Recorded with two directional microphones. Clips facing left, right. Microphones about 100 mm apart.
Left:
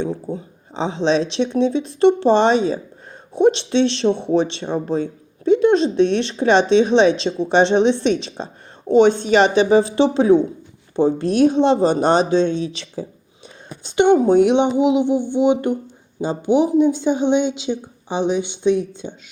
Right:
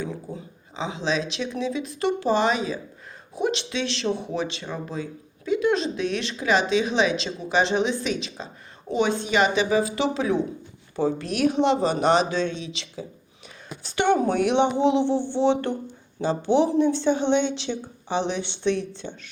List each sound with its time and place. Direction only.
0.0 s speech: 30° left (ahead or behind)
12.6 s speech: 40° left (ahead or behind)
13.8 s speech: 20° left (ahead or behind)